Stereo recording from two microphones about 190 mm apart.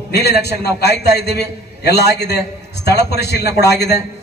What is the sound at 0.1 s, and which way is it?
A man's voice, 60° left (ahead or behind).